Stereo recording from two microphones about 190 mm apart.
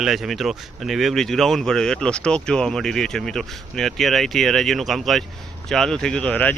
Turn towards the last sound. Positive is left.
turn(degrees=5)  # may be behind; listen again after turning